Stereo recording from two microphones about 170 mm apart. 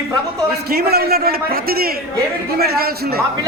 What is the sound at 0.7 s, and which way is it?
A man's voice, 65° right (ahead or behind).